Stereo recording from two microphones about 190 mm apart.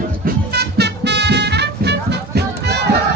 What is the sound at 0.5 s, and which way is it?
Music, 60° right (ahead or behind).